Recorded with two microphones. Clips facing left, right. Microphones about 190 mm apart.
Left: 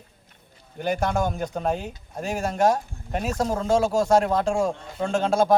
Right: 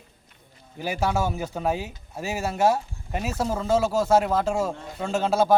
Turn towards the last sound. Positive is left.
turn(degrees=-5)  # may be behind; listen again after turning